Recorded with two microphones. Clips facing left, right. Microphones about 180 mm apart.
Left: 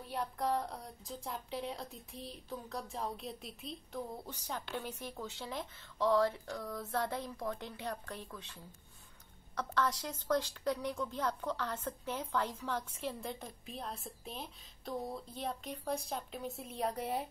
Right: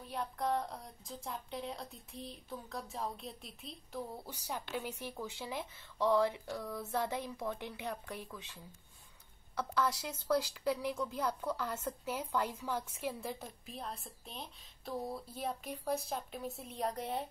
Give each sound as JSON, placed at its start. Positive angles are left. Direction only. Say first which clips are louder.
{"t": 0.0, "sound": "speech", "louder": "left 1 dB", "side_deg": 0}
{"t": 9.6, "sound": "a woman's voice", "louder": "even", "side_deg": -5}